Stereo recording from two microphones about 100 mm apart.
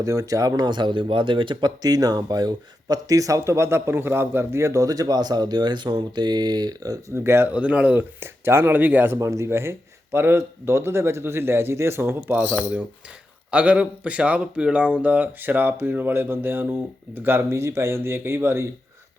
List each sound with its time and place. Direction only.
0.0 s speech: 35° right (ahead or behind); by 1.7 s 55° right (ahead or behind)
1.8 s speech: 40° right (ahead or behind)
7.1 s speech: 25° right (ahead or behind)